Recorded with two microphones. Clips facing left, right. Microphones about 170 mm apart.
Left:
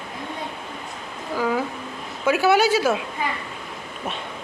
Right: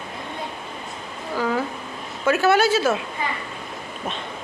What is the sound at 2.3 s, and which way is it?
Speech, 10° left (ahead or behind).